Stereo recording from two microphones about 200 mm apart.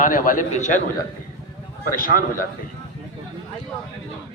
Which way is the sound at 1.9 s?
45° left (ahead or behind).